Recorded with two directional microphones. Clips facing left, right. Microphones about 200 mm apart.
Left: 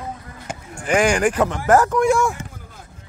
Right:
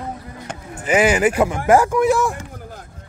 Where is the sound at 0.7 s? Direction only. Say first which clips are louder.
Right 2 dB; 5° right (ahead or behind).